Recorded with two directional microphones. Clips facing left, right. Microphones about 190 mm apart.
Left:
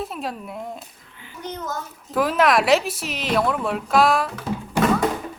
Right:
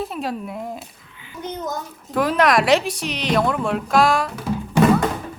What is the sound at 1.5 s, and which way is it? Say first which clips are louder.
Speech: right 3 dB; 20° right (ahead or behind).